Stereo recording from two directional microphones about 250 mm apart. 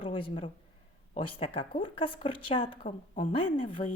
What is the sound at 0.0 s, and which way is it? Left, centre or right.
A woman's voice, left.